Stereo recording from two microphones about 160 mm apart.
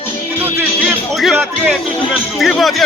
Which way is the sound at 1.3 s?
15° right (ahead or behind).